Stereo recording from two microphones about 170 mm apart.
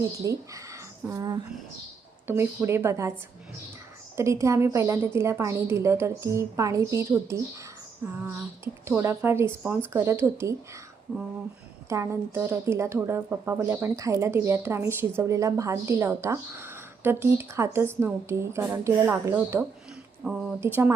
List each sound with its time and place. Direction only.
0.2 s a woman's voice: 20° right (ahead or behind)
4.2 s a woman's voice: 15° right (ahead or behind)
11.9 s a woman's voice: 15° right (ahead or behind)